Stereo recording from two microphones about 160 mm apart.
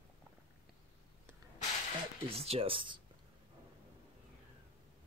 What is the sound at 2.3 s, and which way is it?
Speech, 40° right (ahead or behind).